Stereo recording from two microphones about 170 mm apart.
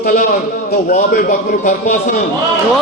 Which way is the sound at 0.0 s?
50° left (ahead or behind).